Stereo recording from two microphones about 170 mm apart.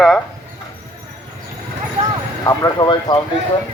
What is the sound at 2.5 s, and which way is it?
Speech, 20° left (ahead or behind).